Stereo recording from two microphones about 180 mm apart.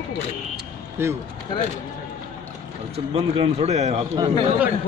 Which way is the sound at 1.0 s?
15° right (ahead or behind).